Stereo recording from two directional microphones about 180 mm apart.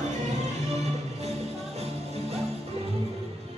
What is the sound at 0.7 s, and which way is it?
Music, 35° right (ahead or behind).